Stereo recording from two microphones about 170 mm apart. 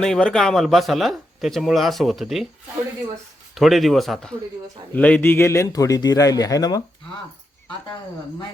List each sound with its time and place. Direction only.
0.0 s speech: 5° left (ahead or behind)
3.5 s a man's voice: centre (ahead or behind); by 6.8 s 20° left (ahead or behind)